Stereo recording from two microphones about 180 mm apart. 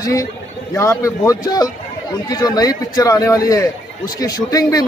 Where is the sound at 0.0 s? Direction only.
20° left (ahead or behind).